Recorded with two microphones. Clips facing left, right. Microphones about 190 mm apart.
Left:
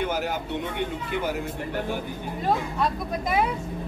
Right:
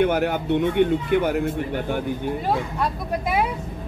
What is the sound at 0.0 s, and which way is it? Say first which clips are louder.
Speech: right 7 dB; 60° right (ahead or behind).